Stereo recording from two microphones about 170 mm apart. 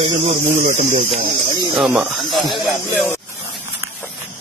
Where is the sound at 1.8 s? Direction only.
Centre (ahead or behind).